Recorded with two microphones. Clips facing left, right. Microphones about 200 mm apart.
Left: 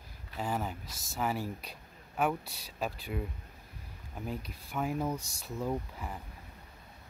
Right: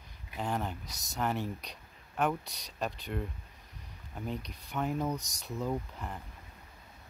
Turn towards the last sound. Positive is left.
turn(degrees=5)  # may be behind; listen again after turning